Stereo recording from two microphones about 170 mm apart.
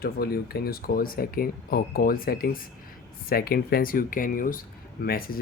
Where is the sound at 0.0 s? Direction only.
65° left (ahead or behind).